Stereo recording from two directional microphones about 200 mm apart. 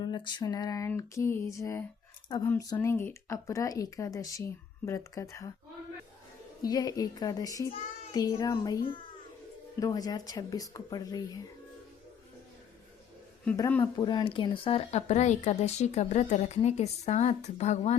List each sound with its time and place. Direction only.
0.0 s speech: 20° left (ahead or behind)
6.7 s a child's voice: 20° left (ahead or behind)
9.8 s speech: 20° left (ahead or behind)
13.6 s speech: 10° left (ahead or behind)
14.0 s speech: 25° left (ahead or behind)